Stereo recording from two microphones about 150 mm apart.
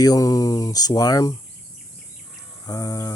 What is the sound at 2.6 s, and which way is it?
Speech, 25° left (ahead or behind).